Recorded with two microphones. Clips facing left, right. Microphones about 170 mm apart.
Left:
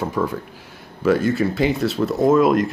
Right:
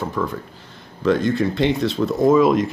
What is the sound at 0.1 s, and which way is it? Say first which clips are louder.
Speech: left 2 dB; 10° left (ahead or behind).